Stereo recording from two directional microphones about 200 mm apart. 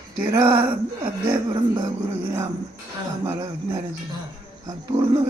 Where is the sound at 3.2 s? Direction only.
20° right (ahead or behind).